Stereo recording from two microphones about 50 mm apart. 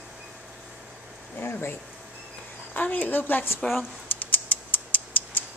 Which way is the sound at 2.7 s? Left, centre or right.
Left.